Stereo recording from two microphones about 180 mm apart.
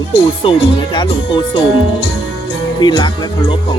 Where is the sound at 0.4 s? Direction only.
30° left (ahead or behind).